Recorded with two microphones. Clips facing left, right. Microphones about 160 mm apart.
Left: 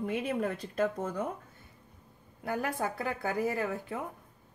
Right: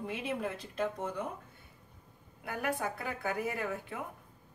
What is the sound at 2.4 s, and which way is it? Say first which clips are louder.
Speech: left 2 dB; 35° left (ahead or behind).